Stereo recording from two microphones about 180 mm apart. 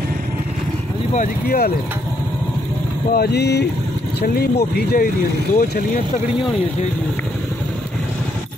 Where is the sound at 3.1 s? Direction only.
60° left (ahead or behind).